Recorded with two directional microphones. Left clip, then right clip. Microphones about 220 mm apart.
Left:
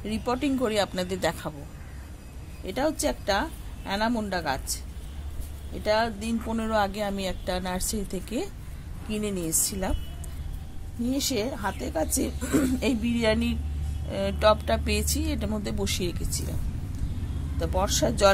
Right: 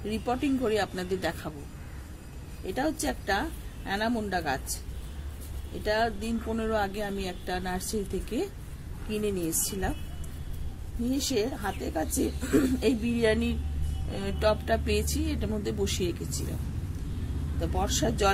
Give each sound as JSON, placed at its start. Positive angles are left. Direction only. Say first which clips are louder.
{"t": 0.0, "sound": "speech", "louder": "left 2 dB", "side_deg": 40}
{"t": 2.6, "sound": "speech", "louder": "left 3 dB", "side_deg": 40}
{"t": 5.9, "sound": "speech", "louder": "left 3 dB", "side_deg": 40}
{"t": 11.1, "sound": "speech", "louder": "left 1 dB", "side_deg": 40}
{"t": 17.6, "sound": "speech", "louder": "left 4 dB", "side_deg": 40}